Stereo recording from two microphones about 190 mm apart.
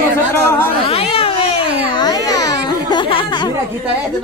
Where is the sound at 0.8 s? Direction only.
30° left (ahead or behind).